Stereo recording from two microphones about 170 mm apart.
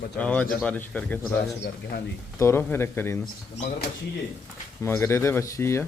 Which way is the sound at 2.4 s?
15° left (ahead or behind).